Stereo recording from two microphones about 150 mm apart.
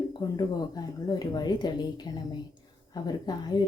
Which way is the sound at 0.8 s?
25° left (ahead or behind).